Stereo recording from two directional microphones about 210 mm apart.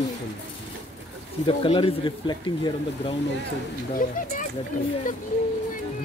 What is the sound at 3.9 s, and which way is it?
Speech, 40° left (ahead or behind).